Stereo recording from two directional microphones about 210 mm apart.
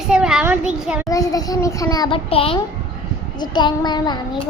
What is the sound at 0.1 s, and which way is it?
Child singing, 5° right (ahead or behind).